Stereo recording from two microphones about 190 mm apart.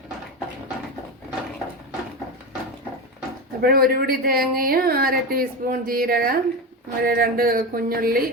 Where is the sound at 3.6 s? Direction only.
50° right (ahead or behind).